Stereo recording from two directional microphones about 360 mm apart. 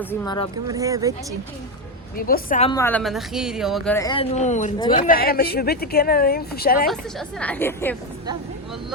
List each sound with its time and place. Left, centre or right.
0.0 s speech: centre
0.7 s speech: centre
2.1 s a woman's voice: left
6.8 s a woman's voice: centre